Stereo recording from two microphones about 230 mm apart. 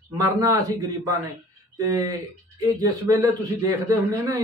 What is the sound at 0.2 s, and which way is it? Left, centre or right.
Speech, centre.